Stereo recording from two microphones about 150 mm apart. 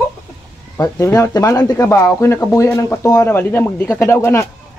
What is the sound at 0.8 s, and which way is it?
Speech, 20° left (ahead or behind).